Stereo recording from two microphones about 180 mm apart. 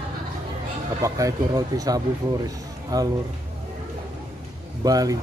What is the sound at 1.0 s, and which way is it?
Speech, 20° right (ahead or behind).